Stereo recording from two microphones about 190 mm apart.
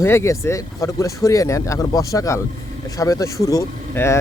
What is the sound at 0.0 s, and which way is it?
Speech, 15° left (ahead or behind).